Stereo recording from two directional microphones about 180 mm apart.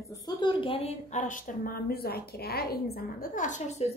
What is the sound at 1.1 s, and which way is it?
A woman's voice, 45° left (ahead or behind).